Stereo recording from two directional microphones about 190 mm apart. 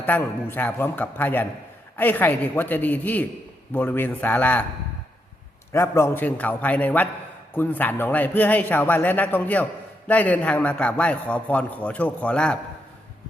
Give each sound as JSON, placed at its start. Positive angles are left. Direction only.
{"t": 0.0, "sound": "a man's voice", "side_deg": 10}
{"t": 5.7, "sound": "a man's voice", "side_deg": 15}